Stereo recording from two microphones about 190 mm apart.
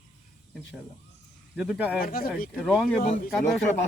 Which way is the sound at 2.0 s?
50° left (ahead or behind).